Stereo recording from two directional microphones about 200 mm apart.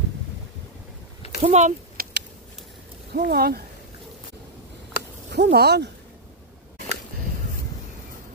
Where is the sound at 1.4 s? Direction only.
35° right (ahead or behind).